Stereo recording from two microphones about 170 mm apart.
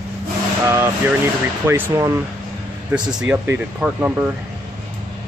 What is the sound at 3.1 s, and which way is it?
Speech, 5° right (ahead or behind).